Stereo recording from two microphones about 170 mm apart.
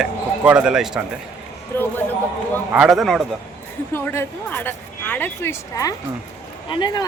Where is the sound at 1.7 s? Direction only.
10° left (ahead or behind).